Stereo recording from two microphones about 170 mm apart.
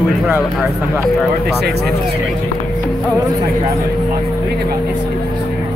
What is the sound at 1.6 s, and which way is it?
Speech, 75° right (ahead or behind).